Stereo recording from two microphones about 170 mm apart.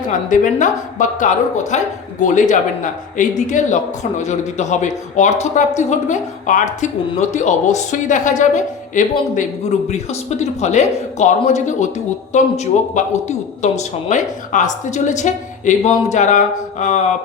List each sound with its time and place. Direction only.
0.1 s a man's voice: 50° left (ahead or behind)